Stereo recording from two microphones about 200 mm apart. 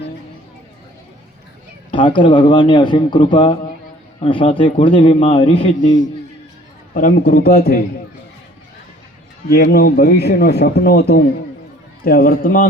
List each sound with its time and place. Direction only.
1.9 s a man's voice: 25° left (ahead or behind); by 7.9 s 50° left (ahead or behind)
9.5 s a man's voice: 50° left (ahead or behind)